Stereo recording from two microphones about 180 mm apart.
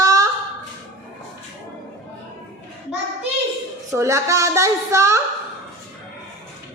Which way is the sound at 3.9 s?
15° right (ahead or behind).